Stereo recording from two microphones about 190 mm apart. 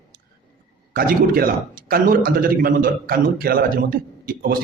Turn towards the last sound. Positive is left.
turn(degrees=-50)  # may be behind; listen again after turning